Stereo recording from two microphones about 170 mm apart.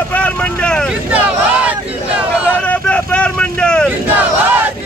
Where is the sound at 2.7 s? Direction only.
5° left (ahead or behind).